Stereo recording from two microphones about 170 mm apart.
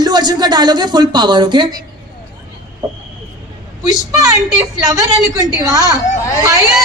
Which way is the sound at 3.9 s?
20° right (ahead or behind).